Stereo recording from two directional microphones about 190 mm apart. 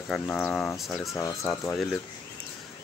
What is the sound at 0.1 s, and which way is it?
Cattle, 5° left (ahead or behind).